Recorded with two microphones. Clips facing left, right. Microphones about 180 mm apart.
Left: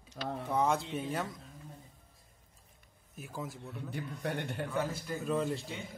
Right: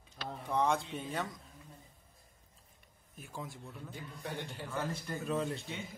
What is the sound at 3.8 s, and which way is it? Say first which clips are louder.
Speech: left 7 dB; 65° left (ahead or behind).